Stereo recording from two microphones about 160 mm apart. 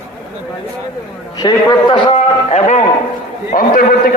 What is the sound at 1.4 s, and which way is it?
A man's voice, 25° left (ahead or behind).